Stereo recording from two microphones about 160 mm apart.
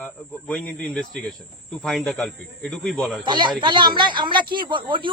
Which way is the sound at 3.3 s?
30° right (ahead or behind).